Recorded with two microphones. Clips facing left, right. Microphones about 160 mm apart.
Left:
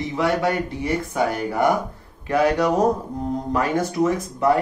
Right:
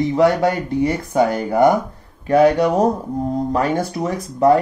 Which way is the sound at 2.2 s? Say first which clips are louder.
Right 5 dB; 35° right (ahead or behind).